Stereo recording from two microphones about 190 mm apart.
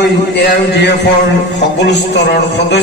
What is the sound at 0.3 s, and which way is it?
A man's voice, 60° left (ahead or behind).